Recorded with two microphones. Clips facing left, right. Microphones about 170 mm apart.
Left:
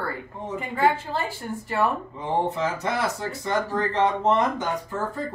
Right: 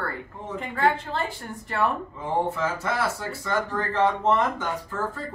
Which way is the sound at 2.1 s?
15° left (ahead or behind).